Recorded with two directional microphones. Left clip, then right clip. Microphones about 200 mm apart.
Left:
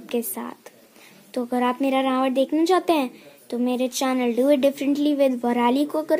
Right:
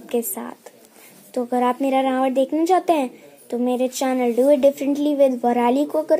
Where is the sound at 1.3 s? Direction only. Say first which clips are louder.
Right 3 dB; 15° left (ahead or behind).